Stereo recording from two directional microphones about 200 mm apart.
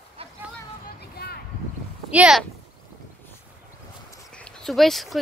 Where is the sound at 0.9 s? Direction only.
50° left (ahead or behind).